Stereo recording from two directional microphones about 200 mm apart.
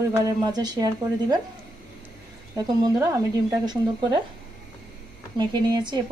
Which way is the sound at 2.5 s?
15° right (ahead or behind).